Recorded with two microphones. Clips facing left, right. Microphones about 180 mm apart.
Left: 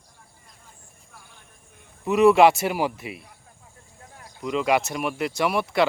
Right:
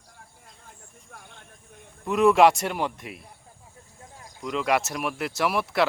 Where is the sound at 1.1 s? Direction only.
65° right (ahead or behind).